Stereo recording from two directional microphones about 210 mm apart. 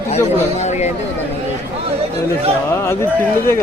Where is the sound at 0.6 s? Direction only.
30° left (ahead or behind).